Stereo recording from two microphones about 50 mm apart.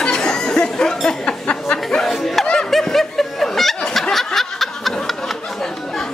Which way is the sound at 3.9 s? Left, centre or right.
Centre.